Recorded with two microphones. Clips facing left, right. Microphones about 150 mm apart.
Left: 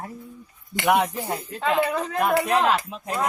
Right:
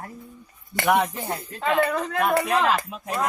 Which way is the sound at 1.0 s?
Centre (ahead or behind).